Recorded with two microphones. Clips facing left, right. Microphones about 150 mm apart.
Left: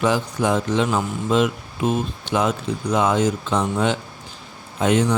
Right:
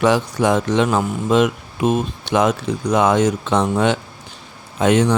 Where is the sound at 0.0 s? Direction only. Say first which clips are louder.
Right 4 dB; 75° right (ahead or behind).